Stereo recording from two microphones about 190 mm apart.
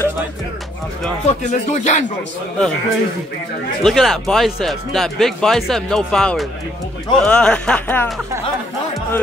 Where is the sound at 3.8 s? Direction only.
Centre (ahead or behind).